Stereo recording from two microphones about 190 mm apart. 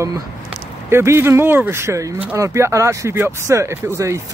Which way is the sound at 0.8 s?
15° right (ahead or behind).